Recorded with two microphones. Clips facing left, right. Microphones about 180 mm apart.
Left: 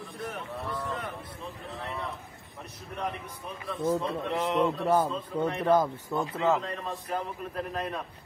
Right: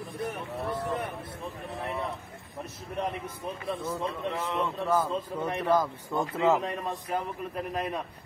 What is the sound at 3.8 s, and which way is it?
A man's voice, 35° left (ahead or behind).